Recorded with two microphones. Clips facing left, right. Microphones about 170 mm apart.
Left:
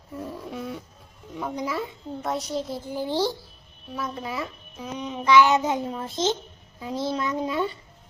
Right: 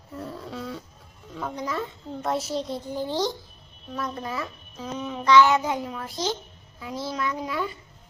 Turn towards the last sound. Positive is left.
turn(degrees=25)  # may be behind; listen again after turning